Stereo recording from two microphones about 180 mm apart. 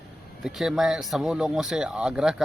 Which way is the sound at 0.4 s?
Centre (ahead or behind).